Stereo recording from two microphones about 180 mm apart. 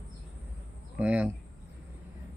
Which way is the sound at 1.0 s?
5° right (ahead or behind).